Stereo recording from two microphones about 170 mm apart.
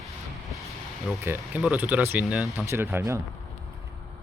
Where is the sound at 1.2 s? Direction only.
10° right (ahead or behind).